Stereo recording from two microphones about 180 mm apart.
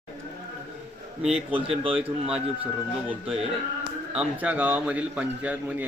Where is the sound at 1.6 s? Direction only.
30° right (ahead or behind).